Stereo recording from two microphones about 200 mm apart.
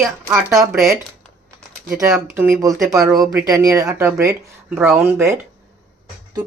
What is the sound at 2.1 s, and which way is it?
Speech, 10° right (ahead or behind).